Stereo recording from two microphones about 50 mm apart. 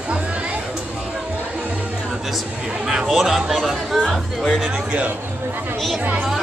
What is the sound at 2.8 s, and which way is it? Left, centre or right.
Speech, centre.